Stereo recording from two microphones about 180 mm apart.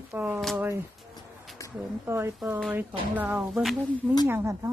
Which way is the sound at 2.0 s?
15° right (ahead or behind).